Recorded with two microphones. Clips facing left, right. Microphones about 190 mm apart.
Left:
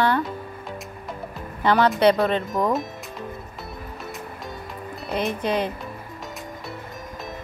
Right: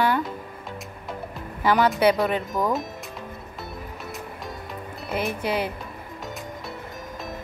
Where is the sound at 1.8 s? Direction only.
5° right (ahead or behind).